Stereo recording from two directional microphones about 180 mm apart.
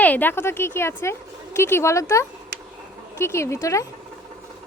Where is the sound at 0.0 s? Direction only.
10° left (ahead or behind).